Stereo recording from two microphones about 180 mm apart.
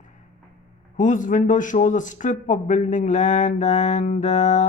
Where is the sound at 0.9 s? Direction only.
45° left (ahead or behind).